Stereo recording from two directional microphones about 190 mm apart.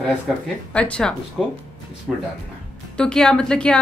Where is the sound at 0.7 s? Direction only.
5° left (ahead or behind).